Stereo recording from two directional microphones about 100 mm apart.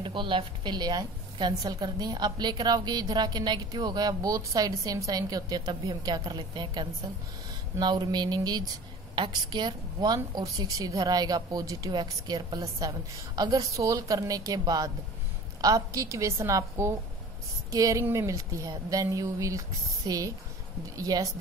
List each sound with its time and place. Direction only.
0.0 s a woman's voice: 55° right (ahead or behind); by 21.3 s 35° right (ahead or behind)